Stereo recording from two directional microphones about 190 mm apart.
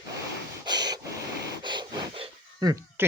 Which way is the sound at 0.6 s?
20° right (ahead or behind).